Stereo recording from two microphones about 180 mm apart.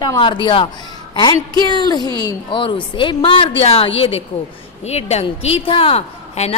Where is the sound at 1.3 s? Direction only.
25° right (ahead or behind).